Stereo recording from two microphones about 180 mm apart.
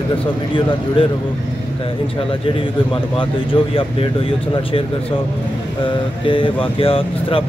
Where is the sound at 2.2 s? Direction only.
30° left (ahead or behind).